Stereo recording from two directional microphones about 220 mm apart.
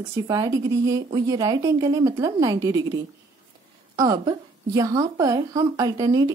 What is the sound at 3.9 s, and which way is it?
A woman's voice, 15° right (ahead or behind).